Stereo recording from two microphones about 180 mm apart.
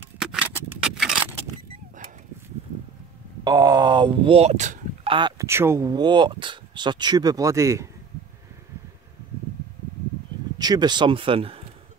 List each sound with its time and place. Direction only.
0.2 s scrape: 5° right (ahead or behind)
3.4 s speech: 20° right (ahead or behind); by 5.1 s 40° right (ahead or behind)
5.1 s speech: 25° right (ahead or behind)
5.5 s speech: 15° right (ahead or behind)
10.6 s speech: 25° right (ahead or behind)